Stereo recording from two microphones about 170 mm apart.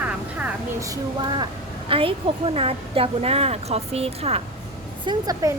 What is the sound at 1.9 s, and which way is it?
Speech, 30° right (ahead or behind).